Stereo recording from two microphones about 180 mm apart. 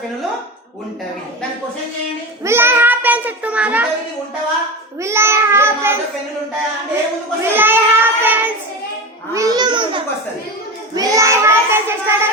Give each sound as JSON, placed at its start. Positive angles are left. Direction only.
{"t": 2.4, "sound": "a child's voice", "side_deg": -15}
{"t": 4.9, "sound": "child singing", "side_deg": -15}
{"t": 7.5, "sound": "child singing", "side_deg": -10}
{"t": 9.3, "sound": "a child's voice", "side_deg": -20}
{"t": 10.9, "sound": "child singing", "side_deg": -20}